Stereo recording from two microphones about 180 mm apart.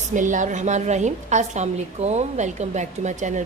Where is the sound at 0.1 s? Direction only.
45° right (ahead or behind).